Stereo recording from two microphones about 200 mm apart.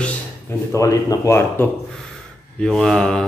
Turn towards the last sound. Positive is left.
turn(degrees=5)  # may be behind; listen again after turning